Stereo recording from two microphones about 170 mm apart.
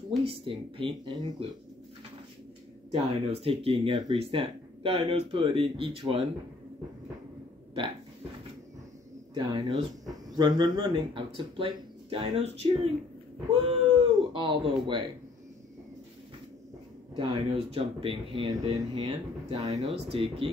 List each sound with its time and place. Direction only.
0.2 s speech: 35° right (ahead or behind)
2.9 s speech: 35° right (ahead or behind)
9.3 s speech: 25° right (ahead or behind)
17.1 s speech: 30° right (ahead or behind)
19.5 s speech: 40° right (ahead or behind)